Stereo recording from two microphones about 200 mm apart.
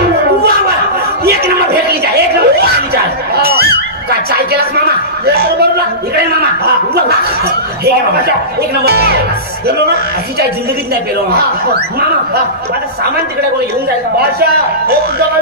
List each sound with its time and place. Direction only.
1.2 s a sound: 50° right (ahead or behind)
6.1 s speech: 50° right (ahead or behind)
8.8 s speech: 50° right (ahead or behind)
14.1 s speech: 50° right (ahead or behind)